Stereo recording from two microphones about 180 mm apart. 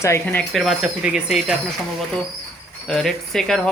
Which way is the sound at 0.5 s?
Centre (ahead or behind).